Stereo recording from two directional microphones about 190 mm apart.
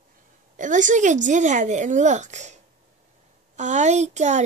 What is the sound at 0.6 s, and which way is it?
Speech, 40° right (ahead or behind).